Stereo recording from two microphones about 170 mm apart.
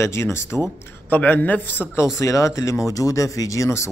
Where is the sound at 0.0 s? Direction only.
15° left (ahead or behind).